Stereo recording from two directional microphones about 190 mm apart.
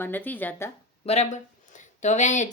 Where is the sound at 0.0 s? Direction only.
10° left (ahead or behind).